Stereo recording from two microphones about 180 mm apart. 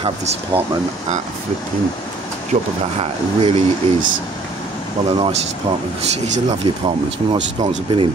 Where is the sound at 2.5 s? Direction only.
35° right (ahead or behind).